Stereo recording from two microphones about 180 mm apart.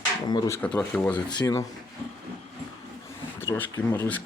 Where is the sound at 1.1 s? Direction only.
25° left (ahead or behind).